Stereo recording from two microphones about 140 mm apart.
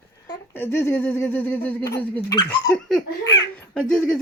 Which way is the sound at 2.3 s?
30° left (ahead or behind).